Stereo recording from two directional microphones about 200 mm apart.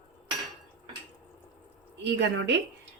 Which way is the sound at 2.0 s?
60° right (ahead or behind).